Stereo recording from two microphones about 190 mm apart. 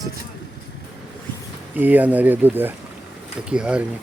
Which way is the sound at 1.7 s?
10° right (ahead or behind).